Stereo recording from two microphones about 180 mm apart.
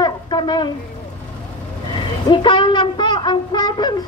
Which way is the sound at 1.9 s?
25° left (ahead or behind).